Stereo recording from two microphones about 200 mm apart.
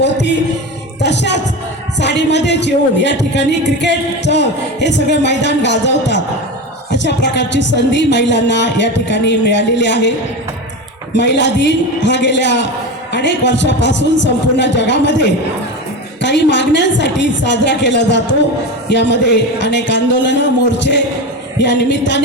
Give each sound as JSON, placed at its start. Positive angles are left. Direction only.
{"t": 0.0, "sound": "music", "side_deg": 60}
{"t": 2.0, "sound": "a man's voice", "side_deg": 60}
{"t": 11.1, "sound": "a man's voice", "side_deg": 60}
{"t": 16.2, "sound": "a man's voice", "side_deg": 60}